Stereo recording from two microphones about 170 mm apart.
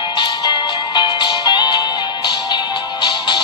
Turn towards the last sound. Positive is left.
turn(degrees=25)  # may be behind; listen again after turning